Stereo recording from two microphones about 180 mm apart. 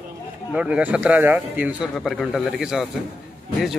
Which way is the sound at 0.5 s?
5° right (ahead or behind).